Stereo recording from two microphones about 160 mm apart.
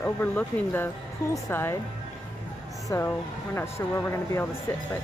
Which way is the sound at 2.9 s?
15° left (ahead or behind).